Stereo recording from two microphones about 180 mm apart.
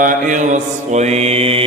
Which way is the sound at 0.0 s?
45° right (ahead or behind).